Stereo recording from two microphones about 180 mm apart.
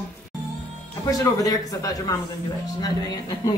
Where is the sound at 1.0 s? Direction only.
20° left (ahead or behind).